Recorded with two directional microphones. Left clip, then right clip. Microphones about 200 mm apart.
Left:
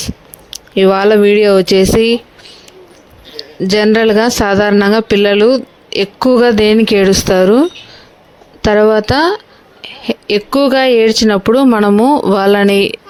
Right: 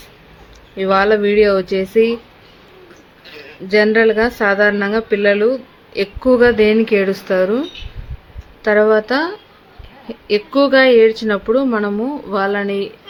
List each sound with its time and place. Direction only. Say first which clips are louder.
0.5 s speech: left 5 dB; 45° left (ahead or behind)
3.9 s speech: left 3 dB; 50° left (ahead or behind)